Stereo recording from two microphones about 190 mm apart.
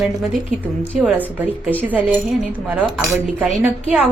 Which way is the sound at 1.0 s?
5° right (ahead or behind).